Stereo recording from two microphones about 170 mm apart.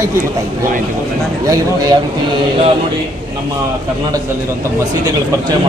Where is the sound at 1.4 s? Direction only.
20° right (ahead or behind).